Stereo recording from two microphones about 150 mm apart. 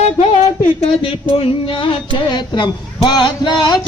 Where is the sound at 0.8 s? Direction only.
35° left (ahead or behind).